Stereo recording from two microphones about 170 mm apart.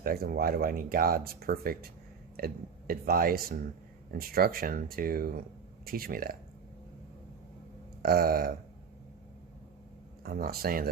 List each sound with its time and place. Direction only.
0.0 s speech: 60° right (ahead or behind)
8.0 s speech: 60° right (ahead or behind)
10.2 s speech: 60° right (ahead or behind)